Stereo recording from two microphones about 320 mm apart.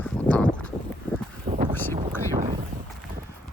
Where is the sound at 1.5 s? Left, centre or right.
Right.